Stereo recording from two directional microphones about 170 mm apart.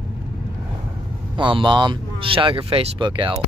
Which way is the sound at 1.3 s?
30° right (ahead or behind).